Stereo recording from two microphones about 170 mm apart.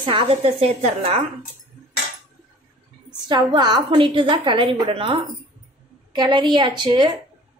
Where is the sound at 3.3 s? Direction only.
25° right (ahead or behind).